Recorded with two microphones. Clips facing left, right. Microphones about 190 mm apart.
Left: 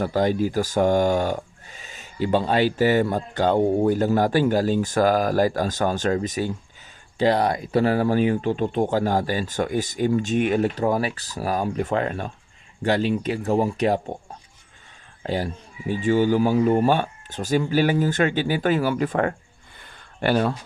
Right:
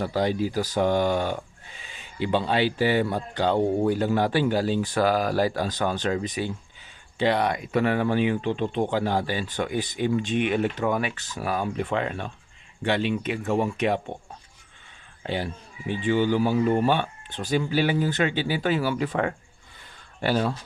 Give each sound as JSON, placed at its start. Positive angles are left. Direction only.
{"t": 0.0, "sound": "speech", "side_deg": 50}
{"t": 15.2, "sound": "speech", "side_deg": 40}
{"t": 19.8, "sound": "a sound", "side_deg": 60}